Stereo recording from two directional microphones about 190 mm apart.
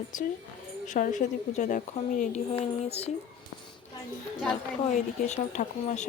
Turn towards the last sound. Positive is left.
turn(degrees=40)  # may be behind; listen again after turning